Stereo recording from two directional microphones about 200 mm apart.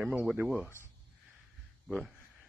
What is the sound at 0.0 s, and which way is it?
Speech, 5° right (ahead or behind).